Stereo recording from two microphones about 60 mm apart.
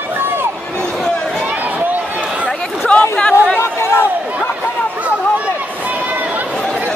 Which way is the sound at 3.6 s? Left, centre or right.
Left.